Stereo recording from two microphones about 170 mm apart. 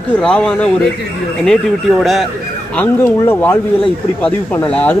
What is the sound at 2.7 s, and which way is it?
Speech, 15° left (ahead or behind).